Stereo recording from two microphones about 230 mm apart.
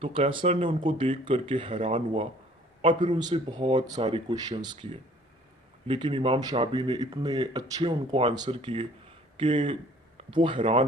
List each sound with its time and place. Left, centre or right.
0.0 s speech: right